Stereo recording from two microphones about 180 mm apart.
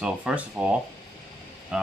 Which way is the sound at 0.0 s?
5° right (ahead or behind).